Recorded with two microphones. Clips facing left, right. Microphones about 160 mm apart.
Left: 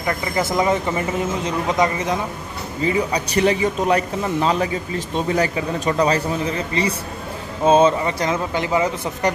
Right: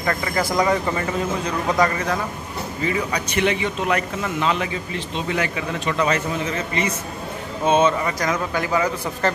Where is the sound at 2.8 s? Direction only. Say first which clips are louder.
Left 4 dB; 30° left (ahead or behind).